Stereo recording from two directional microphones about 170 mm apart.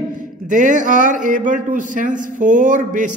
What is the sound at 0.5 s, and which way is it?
Speech, 50° right (ahead or behind).